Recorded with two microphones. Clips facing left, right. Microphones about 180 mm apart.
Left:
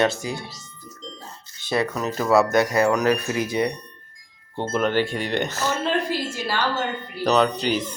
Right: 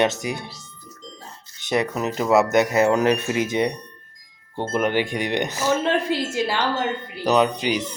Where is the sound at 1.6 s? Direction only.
20° right (ahead or behind).